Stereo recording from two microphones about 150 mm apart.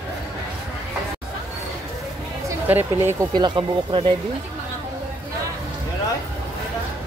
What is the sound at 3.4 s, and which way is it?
Speech, 35° right (ahead or behind).